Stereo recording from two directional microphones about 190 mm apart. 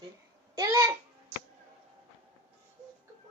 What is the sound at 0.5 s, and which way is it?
Speech, 15° right (ahead or behind).